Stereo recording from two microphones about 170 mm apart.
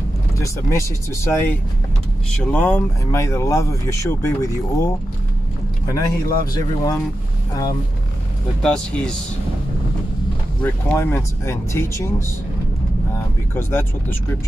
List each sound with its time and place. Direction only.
0.4 s speech: 15° left (ahead or behind)
8.6 s speech: 5° left (ahead or behind)
10.6 s speech: 10° left (ahead or behind)
13.6 s speech: 15° left (ahead or behind)